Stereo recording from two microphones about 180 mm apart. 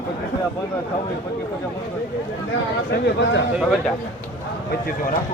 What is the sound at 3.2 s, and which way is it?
Speech, 90° left.